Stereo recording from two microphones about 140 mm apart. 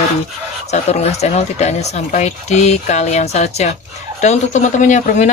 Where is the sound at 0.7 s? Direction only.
50° left (ahead or behind).